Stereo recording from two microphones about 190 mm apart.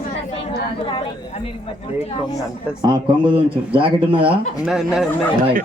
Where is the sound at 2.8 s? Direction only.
25° right (ahead or behind).